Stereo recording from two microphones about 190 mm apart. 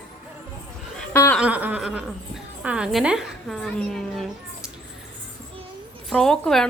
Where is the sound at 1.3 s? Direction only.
5° right (ahead or behind).